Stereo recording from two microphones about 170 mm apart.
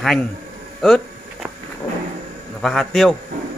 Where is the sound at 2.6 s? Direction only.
Centre (ahead or behind).